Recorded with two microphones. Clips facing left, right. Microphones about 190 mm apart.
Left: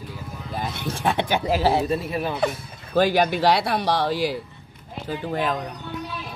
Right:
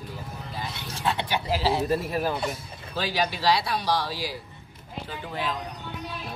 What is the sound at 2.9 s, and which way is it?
Speech, 55° left (ahead or behind).